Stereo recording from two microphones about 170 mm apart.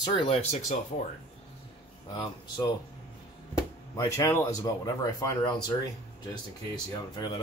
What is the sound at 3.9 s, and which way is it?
Speech, 20° left (ahead or behind).